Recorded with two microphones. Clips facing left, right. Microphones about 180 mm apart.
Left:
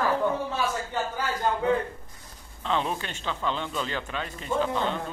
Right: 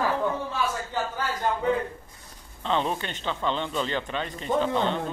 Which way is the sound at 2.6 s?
Centre (ahead or behind).